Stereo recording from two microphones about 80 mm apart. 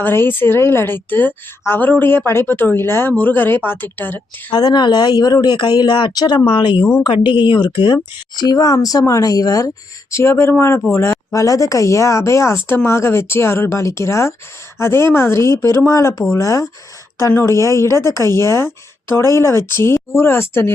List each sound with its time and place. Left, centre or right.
0.0 s speech: left
4.5 s speech: left
8.4 s speech: left
10.1 s speech: left